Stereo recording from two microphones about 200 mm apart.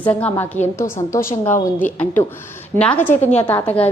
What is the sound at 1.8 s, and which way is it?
A woman's voice, 10° left (ahead or behind).